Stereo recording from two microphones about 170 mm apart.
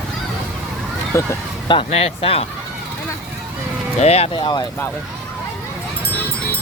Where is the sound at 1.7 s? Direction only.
35° left (ahead or behind).